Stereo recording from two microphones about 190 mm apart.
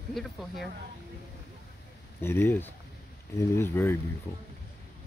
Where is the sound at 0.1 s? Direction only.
Centre (ahead or behind).